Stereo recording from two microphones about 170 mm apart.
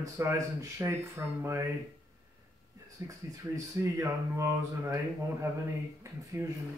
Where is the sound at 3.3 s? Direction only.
20° right (ahead or behind).